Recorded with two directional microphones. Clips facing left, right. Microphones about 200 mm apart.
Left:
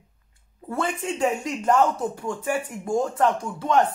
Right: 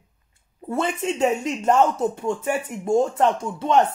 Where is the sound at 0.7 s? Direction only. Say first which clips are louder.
Right 3 dB; 25° right (ahead or behind).